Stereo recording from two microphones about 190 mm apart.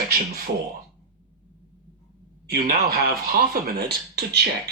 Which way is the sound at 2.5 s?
50° right (ahead or behind).